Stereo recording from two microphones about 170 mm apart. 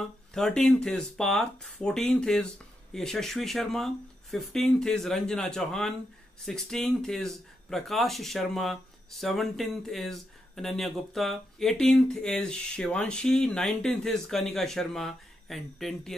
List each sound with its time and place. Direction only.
0.0 s speech: 5° left (ahead or behind)